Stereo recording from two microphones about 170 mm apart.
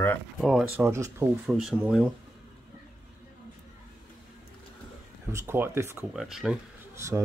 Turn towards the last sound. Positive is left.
turn(degrees=-15)  # may be behind; listen again after turning